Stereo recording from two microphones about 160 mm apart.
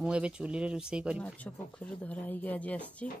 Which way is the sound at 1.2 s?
10° left (ahead or behind).